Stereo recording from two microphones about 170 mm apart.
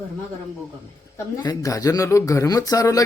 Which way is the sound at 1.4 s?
20° left (ahead or behind).